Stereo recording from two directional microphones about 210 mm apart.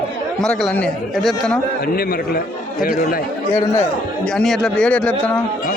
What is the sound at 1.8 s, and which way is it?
A man's voice, 45° left (ahead or behind).